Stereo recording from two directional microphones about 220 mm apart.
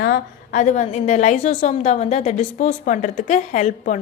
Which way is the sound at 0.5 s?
35° left (ahead or behind).